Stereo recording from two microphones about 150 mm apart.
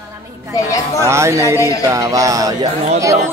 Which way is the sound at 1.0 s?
20° right (ahead or behind).